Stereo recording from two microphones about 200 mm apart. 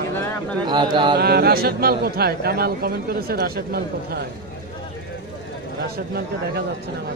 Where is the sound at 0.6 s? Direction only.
20° right (ahead or behind).